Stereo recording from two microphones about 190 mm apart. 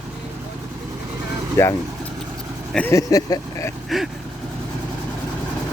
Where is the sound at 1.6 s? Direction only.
15° left (ahead or behind).